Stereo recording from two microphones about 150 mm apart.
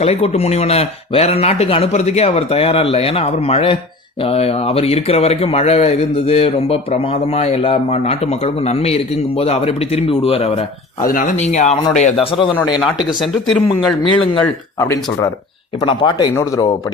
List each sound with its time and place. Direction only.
0.0 s speech: 45° left (ahead or behind)
11.0 s speech: 65° left (ahead or behind); by 12.5 s 35° left (ahead or behind)
13.7 s speech: 35° left (ahead or behind)
14.8 s speech: 20° left (ahead or behind)
15.8 s speech: 35° left (ahead or behind)
16.3 s speech: 20° left (ahead or behind)